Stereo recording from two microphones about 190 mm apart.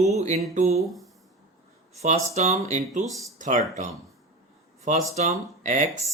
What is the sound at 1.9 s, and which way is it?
Speech, 35° right (ahead or behind).